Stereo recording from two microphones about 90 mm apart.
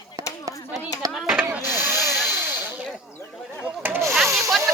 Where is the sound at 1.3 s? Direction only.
20° right (ahead or behind).